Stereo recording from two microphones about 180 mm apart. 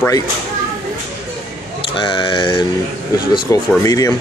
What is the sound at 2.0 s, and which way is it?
Speech, 25° left (ahead or behind).